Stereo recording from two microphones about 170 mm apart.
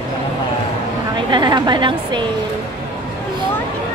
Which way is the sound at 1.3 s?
25° right (ahead or behind).